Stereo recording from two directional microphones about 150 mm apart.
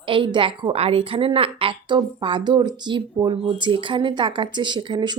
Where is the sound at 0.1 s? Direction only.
35° right (ahead or behind).